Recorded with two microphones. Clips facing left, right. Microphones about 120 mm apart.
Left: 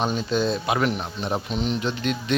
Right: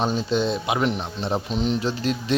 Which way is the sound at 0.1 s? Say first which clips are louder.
Right 1 dB; 25° right (ahead or behind).